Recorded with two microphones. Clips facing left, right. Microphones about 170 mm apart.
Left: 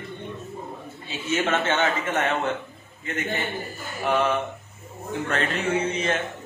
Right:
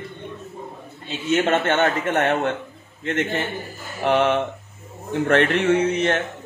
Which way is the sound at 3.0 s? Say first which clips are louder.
Right 7 dB; 90° right.